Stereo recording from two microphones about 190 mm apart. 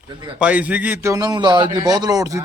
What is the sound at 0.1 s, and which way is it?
Speech, 25° right (ahead or behind).